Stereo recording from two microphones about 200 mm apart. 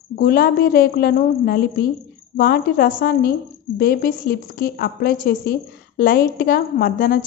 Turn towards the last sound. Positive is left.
turn(degrees=45)  # may be behind; listen again after turning